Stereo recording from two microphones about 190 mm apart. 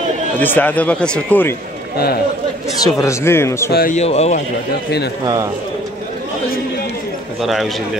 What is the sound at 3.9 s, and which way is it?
Speech, 35° left (ahead or behind).